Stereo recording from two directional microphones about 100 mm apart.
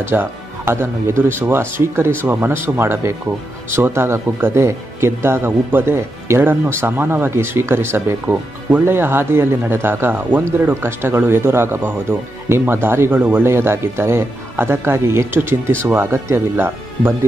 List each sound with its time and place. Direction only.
0.0 s speech: 25° right (ahead or behind)